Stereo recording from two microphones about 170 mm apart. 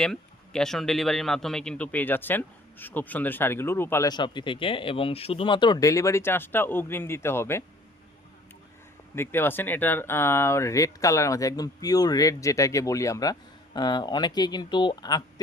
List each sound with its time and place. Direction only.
0.0 s a man's voice: 5° left (ahead or behind)
9.1 s speech: 15° left (ahead or behind)